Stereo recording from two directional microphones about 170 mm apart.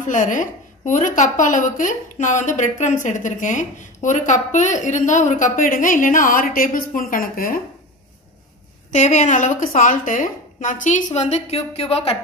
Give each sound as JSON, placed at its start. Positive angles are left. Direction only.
{"t": 0.0, "sound": "a woman's voice", "side_deg": 50}
{"t": 8.9, "sound": "a woman's voice", "side_deg": 45}